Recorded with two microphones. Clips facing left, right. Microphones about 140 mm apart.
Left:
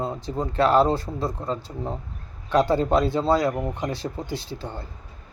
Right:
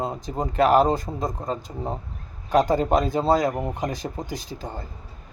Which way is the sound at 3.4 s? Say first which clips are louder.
Even; 20° right (ahead or behind).